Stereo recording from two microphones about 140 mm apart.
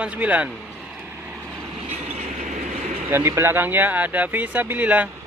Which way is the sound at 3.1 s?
15° right (ahead or behind).